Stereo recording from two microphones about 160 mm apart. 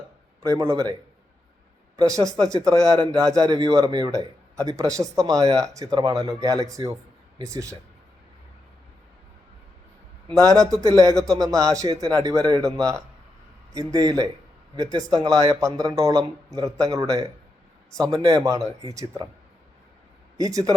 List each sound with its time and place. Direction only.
0.4 s speech: 20° right (ahead or behind)
2.0 s speech: 20° right (ahead or behind)
10.2 s speech: 20° right (ahead or behind)
20.4 s speech: 20° right (ahead or behind)